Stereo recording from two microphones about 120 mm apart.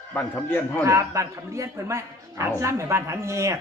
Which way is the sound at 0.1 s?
15° left (ahead or behind).